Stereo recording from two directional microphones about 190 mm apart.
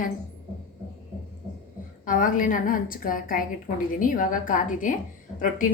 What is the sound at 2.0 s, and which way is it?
A woman's voice, 45° left (ahead or behind).